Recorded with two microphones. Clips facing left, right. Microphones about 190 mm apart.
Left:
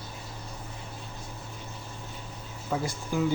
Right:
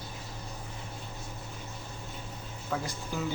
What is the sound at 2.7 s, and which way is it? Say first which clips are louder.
Speech: left 4 dB; 15° left (ahead or behind).